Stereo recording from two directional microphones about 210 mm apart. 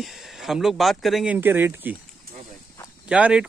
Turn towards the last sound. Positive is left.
turn(degrees=-5)  # may be behind; listen again after turning